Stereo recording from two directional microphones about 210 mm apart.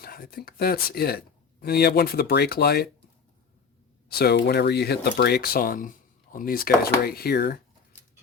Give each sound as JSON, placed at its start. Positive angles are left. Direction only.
{"t": 0.0, "sound": "speech", "side_deg": 45}
{"t": 4.1, "sound": "speech", "side_deg": 50}